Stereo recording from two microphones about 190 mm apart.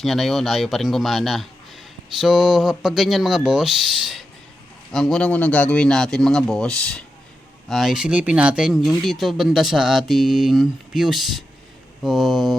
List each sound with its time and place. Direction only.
0.0 s speech: centre (ahead or behind)